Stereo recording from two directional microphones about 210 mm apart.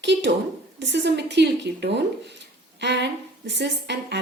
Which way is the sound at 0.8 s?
55° right (ahead or behind).